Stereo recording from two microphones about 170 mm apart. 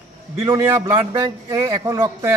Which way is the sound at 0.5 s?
20° right (ahead or behind).